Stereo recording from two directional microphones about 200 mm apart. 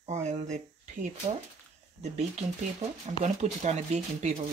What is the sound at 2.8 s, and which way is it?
Speech, 35° right (ahead or behind).